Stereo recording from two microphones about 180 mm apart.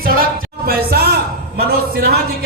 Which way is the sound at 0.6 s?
60° right (ahead or behind).